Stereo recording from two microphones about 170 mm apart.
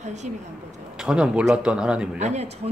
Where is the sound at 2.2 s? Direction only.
40° right (ahead or behind).